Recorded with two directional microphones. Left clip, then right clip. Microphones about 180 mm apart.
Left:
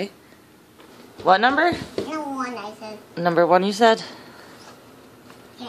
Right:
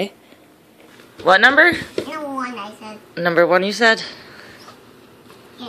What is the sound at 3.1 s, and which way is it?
Speech, 5° left (ahead or behind).